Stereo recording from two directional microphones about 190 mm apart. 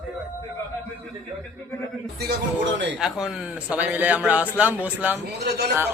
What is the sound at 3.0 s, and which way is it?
Speech, 5° right (ahead or behind).